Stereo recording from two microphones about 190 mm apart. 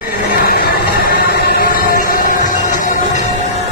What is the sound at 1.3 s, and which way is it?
Music, 50° left (ahead or behind).